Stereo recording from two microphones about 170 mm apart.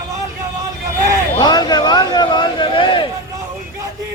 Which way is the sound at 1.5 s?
25° left (ahead or behind).